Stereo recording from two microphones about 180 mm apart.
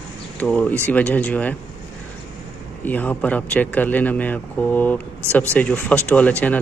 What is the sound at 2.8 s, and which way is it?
Speech, 10° left (ahead or behind).